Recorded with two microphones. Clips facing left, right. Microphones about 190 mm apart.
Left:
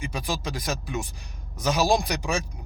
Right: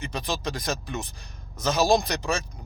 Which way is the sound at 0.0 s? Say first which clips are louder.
Even; 10° left (ahead or behind).